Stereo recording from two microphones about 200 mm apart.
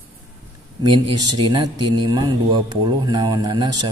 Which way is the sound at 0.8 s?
20° right (ahead or behind).